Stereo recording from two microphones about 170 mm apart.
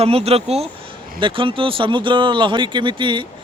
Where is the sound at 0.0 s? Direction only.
35° right (ahead or behind).